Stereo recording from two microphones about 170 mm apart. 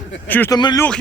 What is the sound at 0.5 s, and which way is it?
Speech, 25° left (ahead or behind).